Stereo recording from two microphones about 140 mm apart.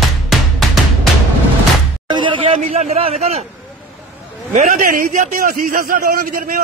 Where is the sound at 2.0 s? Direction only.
35° right (ahead or behind).